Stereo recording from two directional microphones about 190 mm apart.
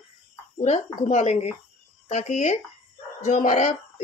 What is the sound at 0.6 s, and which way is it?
Speech, 35° left (ahead or behind).